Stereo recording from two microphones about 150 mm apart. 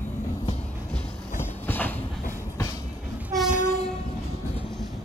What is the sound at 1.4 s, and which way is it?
Train, 15° left (ahead or behind).